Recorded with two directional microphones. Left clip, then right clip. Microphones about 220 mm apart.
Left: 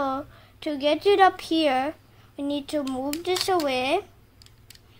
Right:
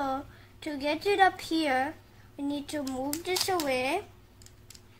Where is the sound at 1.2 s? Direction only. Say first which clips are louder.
Left 5 dB; 40° left (ahead or behind).